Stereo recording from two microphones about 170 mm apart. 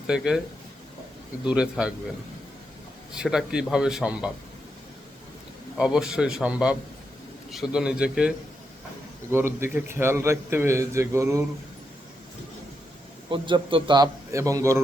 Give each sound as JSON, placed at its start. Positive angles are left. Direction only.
{"t": 0.1, "sound": "a man's voice", "side_deg": -5}
{"t": 1.5, "sound": "a man's voice", "side_deg": -5}
{"t": 3.1, "sound": "a man's voice", "side_deg": -5}
{"t": 5.7, "sound": "a man's voice", "side_deg": -5}
{"t": 9.6, "sound": "a man's voice", "side_deg": -15}
{"t": 13.3, "sound": "a man's voice", "side_deg": -30}